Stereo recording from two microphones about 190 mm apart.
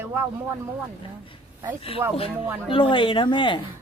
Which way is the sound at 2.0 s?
10° right (ahead or behind).